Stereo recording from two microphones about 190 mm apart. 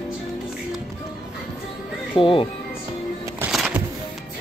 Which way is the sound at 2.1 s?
25° left (ahead or behind).